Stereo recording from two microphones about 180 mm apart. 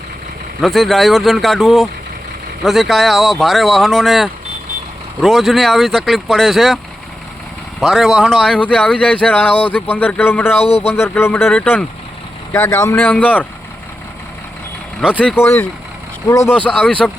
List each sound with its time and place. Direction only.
0.6 s speech: centre (ahead or behind)
7.8 s speech: centre (ahead or behind)
10.6 s speech: 35° left (ahead or behind)
10.8 s speech: 15° left (ahead or behind)
15.2 s speech: 10° left (ahead or behind)